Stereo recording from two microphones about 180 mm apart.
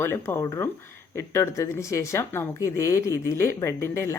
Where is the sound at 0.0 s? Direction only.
15° left (ahead or behind).